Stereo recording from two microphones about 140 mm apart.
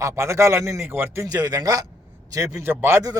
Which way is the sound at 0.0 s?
20° right (ahead or behind).